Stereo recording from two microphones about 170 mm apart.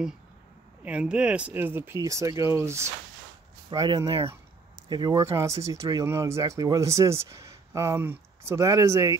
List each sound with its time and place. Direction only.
0.8 s speech: 5° right (ahead or behind)